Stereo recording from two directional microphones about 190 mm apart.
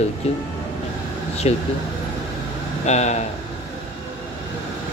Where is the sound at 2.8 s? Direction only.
35° left (ahead or behind).